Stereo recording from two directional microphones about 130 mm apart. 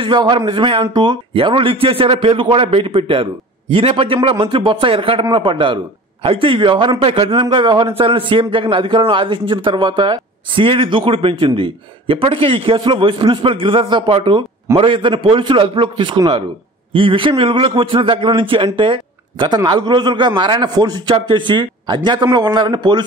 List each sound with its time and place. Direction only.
0.0 s a man's voice: 35° right (ahead or behind)